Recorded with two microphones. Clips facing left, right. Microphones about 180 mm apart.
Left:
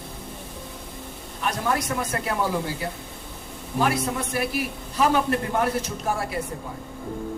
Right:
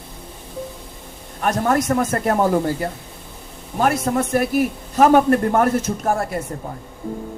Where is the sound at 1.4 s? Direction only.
50° right (ahead or behind).